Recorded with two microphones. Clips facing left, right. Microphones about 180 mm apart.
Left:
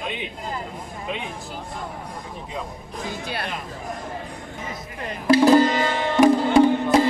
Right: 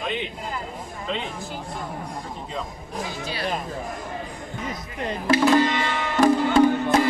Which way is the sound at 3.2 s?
55° left (ahead or behind).